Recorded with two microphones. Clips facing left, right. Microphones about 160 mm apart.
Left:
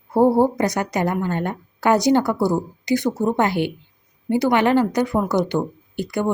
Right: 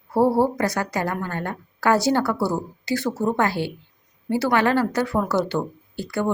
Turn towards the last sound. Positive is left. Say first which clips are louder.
# left 2 dB
turn(degrees=15)  # may be behind; listen again after turning